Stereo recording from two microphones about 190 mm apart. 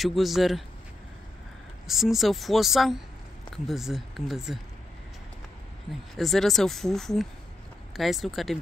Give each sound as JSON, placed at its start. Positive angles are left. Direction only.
{"t": 0.0, "sound": "speech", "side_deg": 0}
{"t": 1.9, "sound": "speech", "side_deg": 0}
{"t": 6.1, "sound": "speech", "side_deg": 0}